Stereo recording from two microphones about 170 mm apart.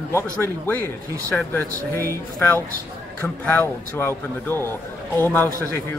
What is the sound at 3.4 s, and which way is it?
Speech, 10° left (ahead or behind).